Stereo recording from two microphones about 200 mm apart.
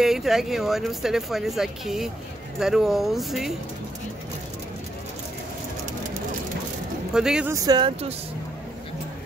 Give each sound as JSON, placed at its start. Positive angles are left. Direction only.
{"t": 0.0, "sound": "speech", "side_deg": 0}
{"t": 7.2, "sound": "speech", "side_deg": -5}
{"t": 7.5, "sound": "speech", "side_deg": -20}